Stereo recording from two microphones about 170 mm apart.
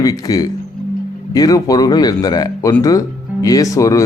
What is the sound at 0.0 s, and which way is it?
A man's voice, 20° left (ahead or behind).